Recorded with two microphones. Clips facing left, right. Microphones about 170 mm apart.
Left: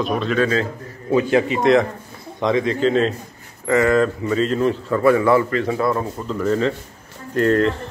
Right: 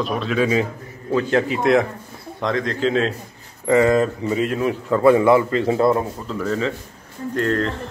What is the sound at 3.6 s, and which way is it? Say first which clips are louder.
A man's voice: right 1 dB; 15° right (ahead or behind).